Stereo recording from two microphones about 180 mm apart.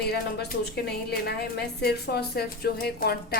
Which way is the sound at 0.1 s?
65° left (ahead or behind).